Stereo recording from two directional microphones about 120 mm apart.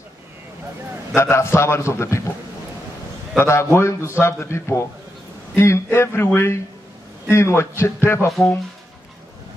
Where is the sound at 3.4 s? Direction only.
20° left (ahead or behind).